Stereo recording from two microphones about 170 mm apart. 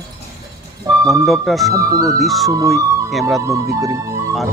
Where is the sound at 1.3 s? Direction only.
Centre (ahead or behind).